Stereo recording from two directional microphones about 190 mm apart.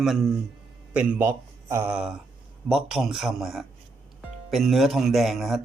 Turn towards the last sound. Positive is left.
turn(degrees=0)  # may be behind; listen again after turning